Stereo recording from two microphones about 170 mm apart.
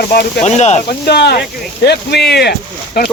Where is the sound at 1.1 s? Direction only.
75° left (ahead or behind).